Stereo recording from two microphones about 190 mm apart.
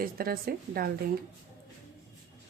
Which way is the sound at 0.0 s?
50° right (ahead or behind).